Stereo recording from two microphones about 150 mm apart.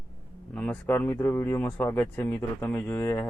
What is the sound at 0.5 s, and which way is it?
Speech, 10° left (ahead or behind).